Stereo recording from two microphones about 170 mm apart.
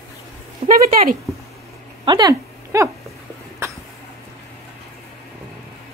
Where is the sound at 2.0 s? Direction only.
25° right (ahead or behind).